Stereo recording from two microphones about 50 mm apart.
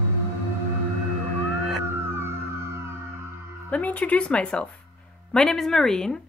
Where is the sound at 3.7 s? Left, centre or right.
Left.